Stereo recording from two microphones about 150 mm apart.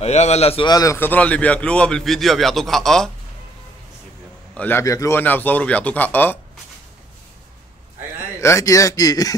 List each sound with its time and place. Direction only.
0.0 s a man's voice: 45° left (ahead or behind)
0.7 s a man's voice: 25° left (ahead or behind); by 3.1 s 5° left (ahead or behind)
4.6 s a man's voice: 15° left (ahead or behind)
8.4 s speech: 20° left (ahead or behind)